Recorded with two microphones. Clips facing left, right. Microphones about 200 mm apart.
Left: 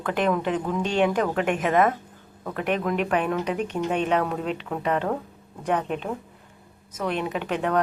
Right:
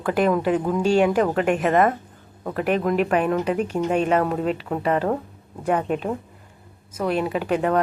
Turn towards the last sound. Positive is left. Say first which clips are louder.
# right 4 dB
turn(degrees=0)  # may be behind; listen again after turning